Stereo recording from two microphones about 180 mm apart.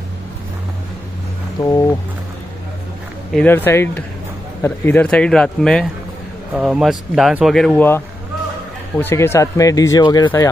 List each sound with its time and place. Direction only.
1.6 s speech: 20° left (ahead or behind)
3.3 s speech: 10° left (ahead or behind)